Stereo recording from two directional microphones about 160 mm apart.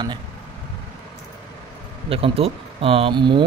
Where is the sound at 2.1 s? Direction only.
35° right (ahead or behind).